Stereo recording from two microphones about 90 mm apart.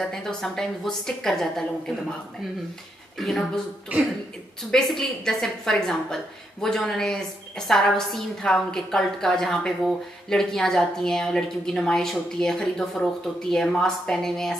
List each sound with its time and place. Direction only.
0.0 s a woman's voice: 5° left (ahead or behind)
3.2 s a woman's voice: centre (ahead or behind)
3.9 s speech: 15° right (ahead or behind)
4.6 s a woman's voice: 5° left (ahead or behind)